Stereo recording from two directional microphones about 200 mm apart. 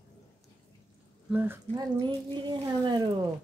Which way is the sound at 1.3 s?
10° right (ahead or behind).